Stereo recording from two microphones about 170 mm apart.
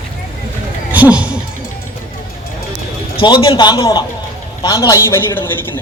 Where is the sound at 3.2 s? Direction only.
30° left (ahead or behind).